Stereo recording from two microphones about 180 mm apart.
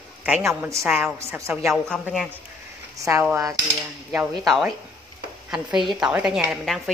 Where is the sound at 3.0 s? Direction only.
15° right (ahead or behind).